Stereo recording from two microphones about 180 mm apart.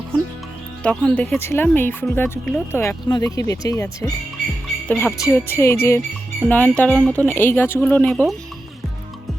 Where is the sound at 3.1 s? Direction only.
20° left (ahead or behind).